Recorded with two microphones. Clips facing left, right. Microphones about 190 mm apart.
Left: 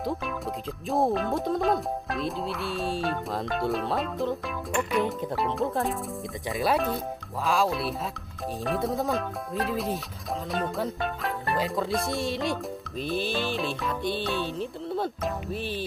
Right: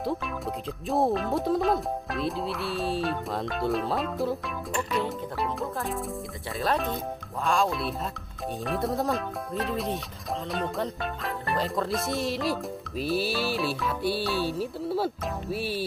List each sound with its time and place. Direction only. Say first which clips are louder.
0.0 s speech: even; centre (ahead or behind)
6.5 s speech: left 2 dB; 10° left (ahead or behind); by 15.8 s 10° right (ahead or behind)